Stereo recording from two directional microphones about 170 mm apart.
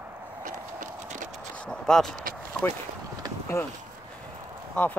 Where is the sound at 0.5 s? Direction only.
50° right (ahead or behind).